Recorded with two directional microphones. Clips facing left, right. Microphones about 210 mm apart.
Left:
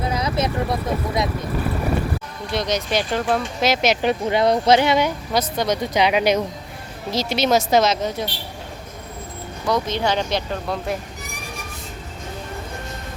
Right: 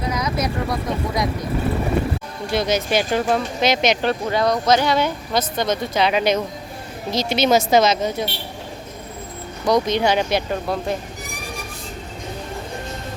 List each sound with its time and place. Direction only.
0.1 s speech: 30° left (ahead or behind)
2.5 s speech: 5° right (ahead or behind)
4.0 s speech: 20° left (ahead or behind)
4.9 s a woman's voice: 10° left (ahead or behind)
9.6 s speech: 15° right (ahead or behind)